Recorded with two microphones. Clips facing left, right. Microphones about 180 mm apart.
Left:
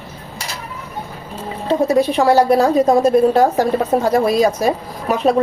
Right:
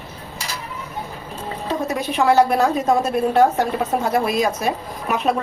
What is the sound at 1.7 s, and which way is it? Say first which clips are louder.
A woman's voice: left 9 dB; 35° left (ahead or behind).